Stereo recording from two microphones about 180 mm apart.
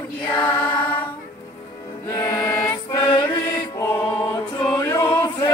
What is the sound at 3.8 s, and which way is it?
Music, 15° left (ahead or behind).